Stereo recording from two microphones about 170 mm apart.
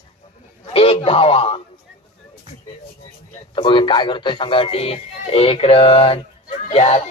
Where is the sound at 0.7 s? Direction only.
35° left (ahead or behind).